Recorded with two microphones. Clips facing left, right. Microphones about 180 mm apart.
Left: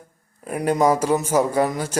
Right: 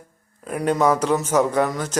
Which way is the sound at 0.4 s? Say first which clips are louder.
Left 1 dB; 10° left (ahead or behind).